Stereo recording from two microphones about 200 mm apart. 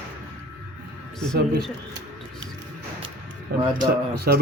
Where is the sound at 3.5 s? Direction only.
50° right (ahead or behind).